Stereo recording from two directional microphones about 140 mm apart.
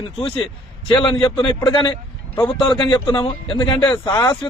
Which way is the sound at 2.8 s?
35° left (ahead or behind).